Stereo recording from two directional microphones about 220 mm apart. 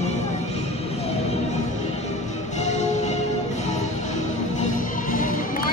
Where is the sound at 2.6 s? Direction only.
30° left (ahead or behind).